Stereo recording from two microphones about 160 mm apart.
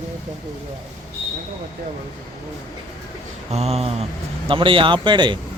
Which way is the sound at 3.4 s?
40° right (ahead or behind).